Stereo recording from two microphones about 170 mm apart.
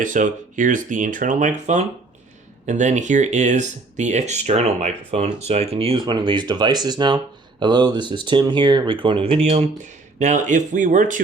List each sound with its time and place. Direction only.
0.0 s speech: 50° right (ahead or behind)